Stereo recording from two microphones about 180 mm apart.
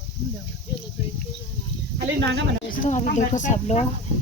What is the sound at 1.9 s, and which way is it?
Snake, 75° right (ahead or behind).